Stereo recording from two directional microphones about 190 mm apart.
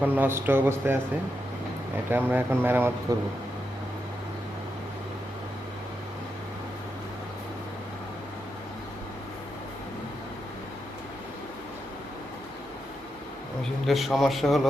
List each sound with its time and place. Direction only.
0.0 s a man's voice: 10° right (ahead or behind)
2.0 s a man's voice: 10° right (ahead or behind)
13.6 s a man's voice: centre (ahead or behind)